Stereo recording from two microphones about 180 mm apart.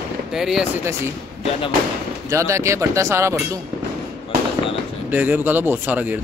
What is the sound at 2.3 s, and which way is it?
Speech, 15° right (ahead or behind).